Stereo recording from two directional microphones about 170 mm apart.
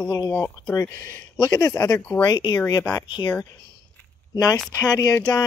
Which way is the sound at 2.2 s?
25° left (ahead or behind).